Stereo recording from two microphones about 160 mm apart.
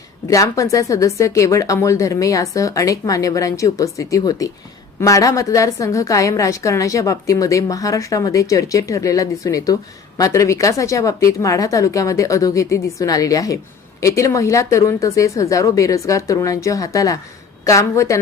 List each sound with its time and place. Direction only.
0.3 s a woman's voice: 20° left (ahead or behind)